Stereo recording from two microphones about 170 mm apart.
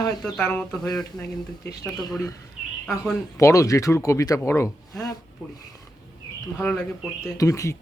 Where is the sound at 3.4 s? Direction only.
20° left (ahead or behind).